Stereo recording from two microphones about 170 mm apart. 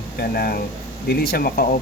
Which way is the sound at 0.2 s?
65° left (ahead or behind).